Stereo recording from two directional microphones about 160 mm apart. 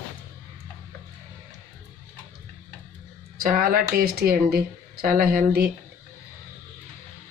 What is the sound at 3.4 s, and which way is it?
Speech, 60° right (ahead or behind).